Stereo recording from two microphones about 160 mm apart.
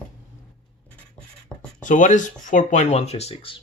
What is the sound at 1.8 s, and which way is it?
Speech, 50° left (ahead or behind).